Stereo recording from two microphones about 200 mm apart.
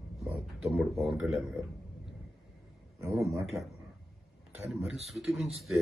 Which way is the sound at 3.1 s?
Centre (ahead or behind).